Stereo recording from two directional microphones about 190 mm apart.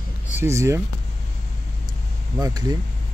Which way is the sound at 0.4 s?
15° right (ahead or behind).